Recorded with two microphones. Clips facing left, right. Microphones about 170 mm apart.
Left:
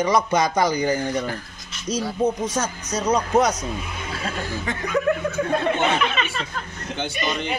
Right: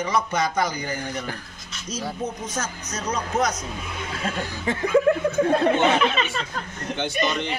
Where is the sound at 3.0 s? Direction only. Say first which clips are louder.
Left 5 dB; 35° left (ahead or behind).